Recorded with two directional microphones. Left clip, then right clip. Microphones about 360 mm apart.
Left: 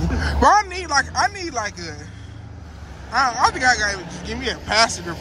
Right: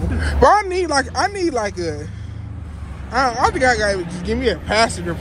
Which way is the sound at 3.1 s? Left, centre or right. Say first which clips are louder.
Right 1 dB; centre.